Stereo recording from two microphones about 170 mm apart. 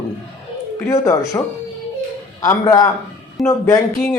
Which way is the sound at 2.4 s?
20° left (ahead or behind).